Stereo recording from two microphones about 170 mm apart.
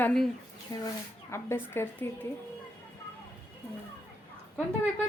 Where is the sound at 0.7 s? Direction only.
20° left (ahead or behind).